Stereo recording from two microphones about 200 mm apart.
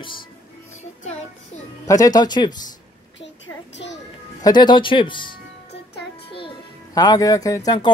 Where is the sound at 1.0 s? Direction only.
35° left (ahead or behind).